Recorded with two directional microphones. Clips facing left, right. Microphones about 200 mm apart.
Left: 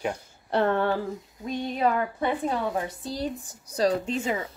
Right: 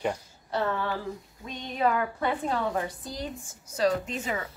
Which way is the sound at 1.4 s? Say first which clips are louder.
Left 2 dB; 30° left (ahead or behind).